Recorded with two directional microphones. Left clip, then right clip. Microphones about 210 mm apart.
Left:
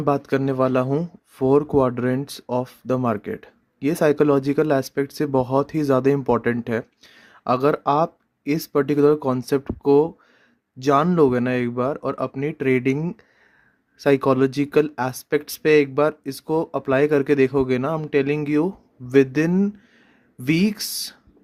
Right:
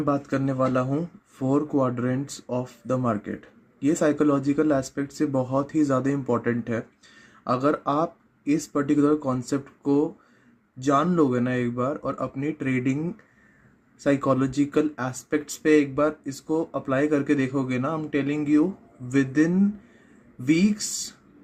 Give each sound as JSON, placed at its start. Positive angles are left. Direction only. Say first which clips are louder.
{"t": 0.0, "sound": "speech", "louder": "left 4 dB", "side_deg": 45}